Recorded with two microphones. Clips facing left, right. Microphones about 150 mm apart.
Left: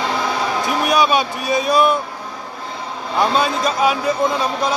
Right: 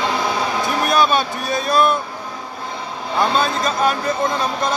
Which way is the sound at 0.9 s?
10° left (ahead or behind).